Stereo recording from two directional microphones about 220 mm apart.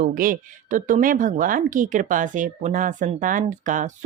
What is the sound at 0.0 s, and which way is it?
Speech, 40° right (ahead or behind).